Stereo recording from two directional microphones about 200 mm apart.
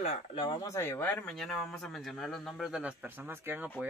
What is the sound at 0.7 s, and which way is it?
Speech, 10° left (ahead or behind).